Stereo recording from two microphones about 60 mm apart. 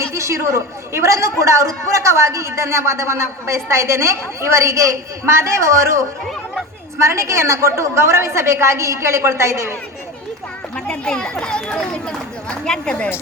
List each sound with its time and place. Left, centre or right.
0.1 s a sound: right
0.9 s a woman's voice: right
7.0 s a woman's voice: right
10.8 s speech: centre